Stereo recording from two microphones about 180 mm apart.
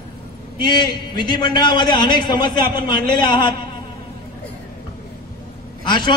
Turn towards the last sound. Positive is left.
turn(degrees=25)  # may be behind; listen again after turning